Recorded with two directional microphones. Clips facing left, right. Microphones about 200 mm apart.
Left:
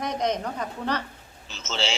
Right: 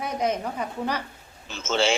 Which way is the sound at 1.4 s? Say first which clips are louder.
Right 6 dB; 55° right (ahead or behind).